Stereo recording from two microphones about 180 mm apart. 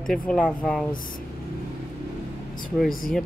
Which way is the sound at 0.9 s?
50° left (ahead or behind).